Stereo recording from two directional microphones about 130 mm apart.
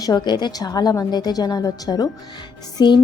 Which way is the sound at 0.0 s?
30° left (ahead or behind).